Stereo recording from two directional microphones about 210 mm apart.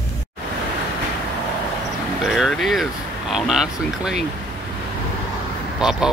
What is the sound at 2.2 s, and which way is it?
Speech, centre (ahead or behind).